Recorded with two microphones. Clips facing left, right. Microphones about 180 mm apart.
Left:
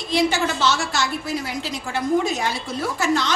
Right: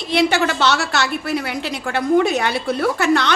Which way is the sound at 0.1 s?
65° right (ahead or behind).